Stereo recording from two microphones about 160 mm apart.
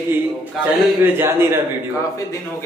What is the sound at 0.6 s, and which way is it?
Speech, centre (ahead or behind).